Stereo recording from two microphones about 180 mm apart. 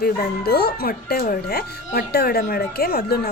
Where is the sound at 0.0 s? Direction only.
60° left (ahead or behind).